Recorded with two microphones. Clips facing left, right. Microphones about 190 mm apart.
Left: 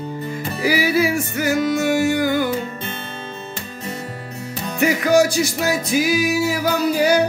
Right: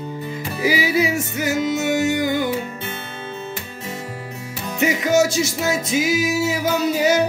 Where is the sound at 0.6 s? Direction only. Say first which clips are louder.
Left 1 dB; 20° right (ahead or behind).